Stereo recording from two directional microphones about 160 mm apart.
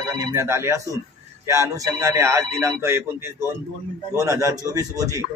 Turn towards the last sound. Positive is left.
turn(degrees=-20)  # may be behind; listen again after turning